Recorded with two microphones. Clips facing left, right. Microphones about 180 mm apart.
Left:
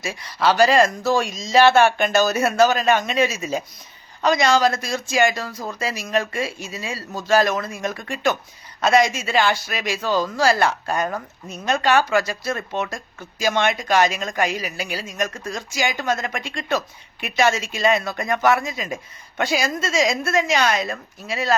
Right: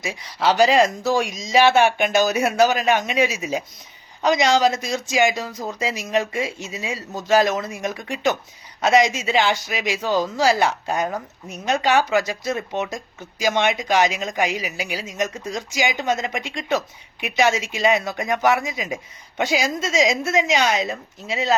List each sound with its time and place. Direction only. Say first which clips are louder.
0.0 s a man's voice: left 1 dB; 15° right (ahead or behind)